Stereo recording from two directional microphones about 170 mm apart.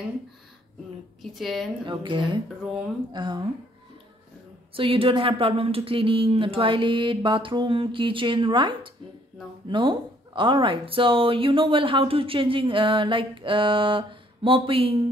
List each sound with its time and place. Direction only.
1.2 s a woman's voice: centre (ahead or behind)
1.9 s speech: 30° right (ahead or behind)
4.7 s speech: 30° right (ahead or behind)